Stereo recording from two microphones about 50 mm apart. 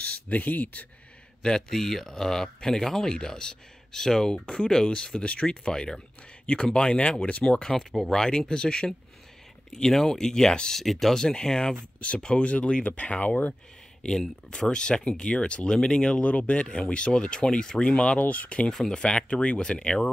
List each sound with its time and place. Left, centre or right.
0.0 s speech: left
1.4 s speech: centre
14.0 s speech: centre
18.2 s speech: left
18.7 s speech: centre